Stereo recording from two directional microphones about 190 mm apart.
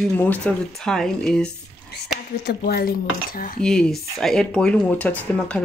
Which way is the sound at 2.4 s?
50° left (ahead or behind).